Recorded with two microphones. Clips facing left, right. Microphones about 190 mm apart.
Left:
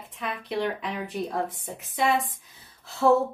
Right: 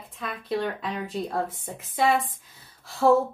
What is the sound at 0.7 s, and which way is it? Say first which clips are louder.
Speech: right 1 dB; 20° left (ahead or behind).